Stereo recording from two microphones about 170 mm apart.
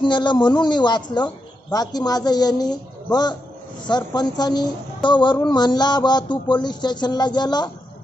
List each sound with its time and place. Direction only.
0.0 s a woman's voice: 25° left (ahead or behind)